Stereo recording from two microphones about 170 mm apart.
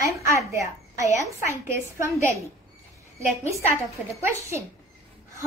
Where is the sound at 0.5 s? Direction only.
15° right (ahead or behind).